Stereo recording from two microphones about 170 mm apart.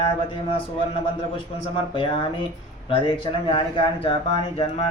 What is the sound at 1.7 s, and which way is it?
Speech, 30° left (ahead or behind).